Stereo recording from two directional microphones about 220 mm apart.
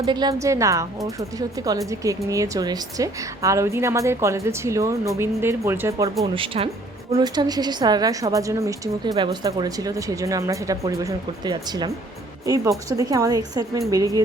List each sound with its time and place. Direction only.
0.0 s a woman's voice: 20° right (ahead or behind)
6.3 s a woman's voice: 25° right (ahead or behind)
12.9 s a woman's voice: 15° right (ahead or behind)